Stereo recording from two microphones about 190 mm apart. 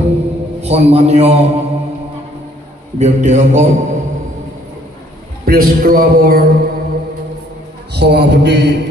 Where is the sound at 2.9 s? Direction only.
40° right (ahead or behind).